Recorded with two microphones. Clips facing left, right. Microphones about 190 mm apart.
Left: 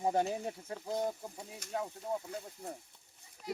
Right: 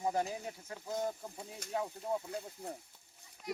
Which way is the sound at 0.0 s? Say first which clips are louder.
Left 3 dB; 30° left (ahead or behind).